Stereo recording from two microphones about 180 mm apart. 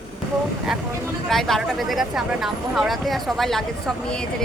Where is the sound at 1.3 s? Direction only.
Centre (ahead or behind).